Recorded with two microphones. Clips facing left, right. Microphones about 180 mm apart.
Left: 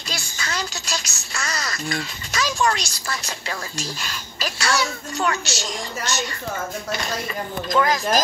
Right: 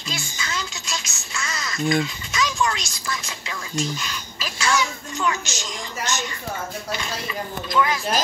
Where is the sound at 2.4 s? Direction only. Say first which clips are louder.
Left 2 dB; 40° left (ahead or behind).